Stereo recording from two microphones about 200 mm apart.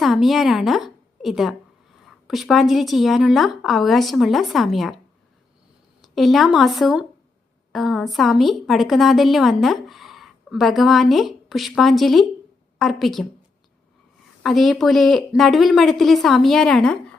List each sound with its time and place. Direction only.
0.0 s a woman's voice: centre (ahead or behind)
6.0 s a woman's voice: centre (ahead or behind)
14.4 s a woman's voice: centre (ahead or behind)